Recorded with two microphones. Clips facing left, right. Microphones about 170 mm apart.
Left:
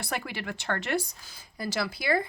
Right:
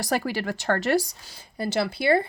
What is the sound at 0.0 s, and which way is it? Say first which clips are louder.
Speech: right 8 dB; 40° right (ahead or behind).